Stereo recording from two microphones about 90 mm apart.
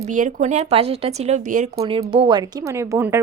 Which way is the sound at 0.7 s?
90° right.